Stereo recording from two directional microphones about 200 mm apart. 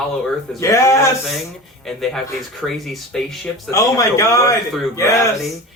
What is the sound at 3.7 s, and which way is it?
A man's voice, 15° left (ahead or behind).